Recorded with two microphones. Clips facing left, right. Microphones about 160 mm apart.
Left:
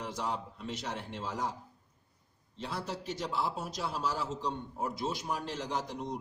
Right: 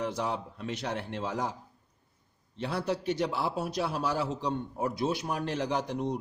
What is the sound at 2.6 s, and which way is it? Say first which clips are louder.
A man's voice: right 7 dB; 65° right (ahead or behind).